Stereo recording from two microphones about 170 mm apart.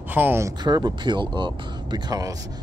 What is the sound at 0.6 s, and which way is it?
Speech, 25° right (ahead or behind).